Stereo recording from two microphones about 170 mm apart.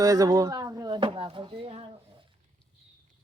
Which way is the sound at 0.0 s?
20° right (ahead or behind).